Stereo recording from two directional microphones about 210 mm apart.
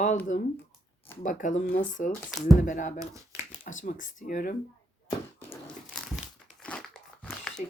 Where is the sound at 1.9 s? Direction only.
40° left (ahead or behind).